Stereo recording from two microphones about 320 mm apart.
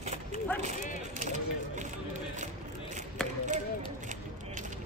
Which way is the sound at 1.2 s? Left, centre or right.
Right.